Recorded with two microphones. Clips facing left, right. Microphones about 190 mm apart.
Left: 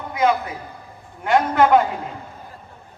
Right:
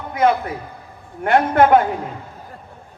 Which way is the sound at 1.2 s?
55° right (ahead or behind).